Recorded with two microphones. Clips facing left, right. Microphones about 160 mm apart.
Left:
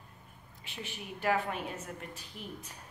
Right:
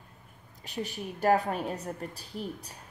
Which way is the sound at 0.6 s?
40° right (ahead or behind).